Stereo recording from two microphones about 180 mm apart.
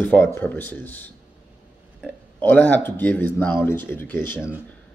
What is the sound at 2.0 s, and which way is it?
Speech, 10° left (ahead or behind).